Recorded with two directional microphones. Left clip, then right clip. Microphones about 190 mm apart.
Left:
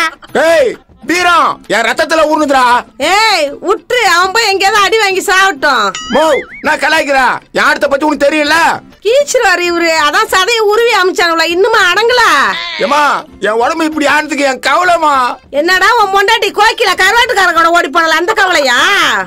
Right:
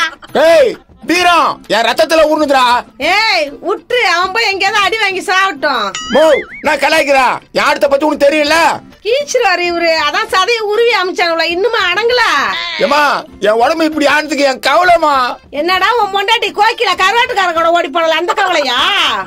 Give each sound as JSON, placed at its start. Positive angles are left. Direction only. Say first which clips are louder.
{"t": 0.3, "sound": "a man's voice", "louder": "right 1 dB", "side_deg": 0}
{"t": 3.0, "sound": "a woman's voice", "louder": "left 3 dB", "side_deg": 45}
{"t": 5.9, "sound": "speech", "louder": "right 1 dB", "side_deg": 5}
{"t": 9.0, "sound": "a woman's voice", "louder": "left 3 dB", "side_deg": 50}
{"t": 12.7, "sound": "a man's voice", "louder": "even", "side_deg": 0}
{"t": 15.5, "sound": "a woman's voice", "louder": "left 4 dB", "side_deg": 40}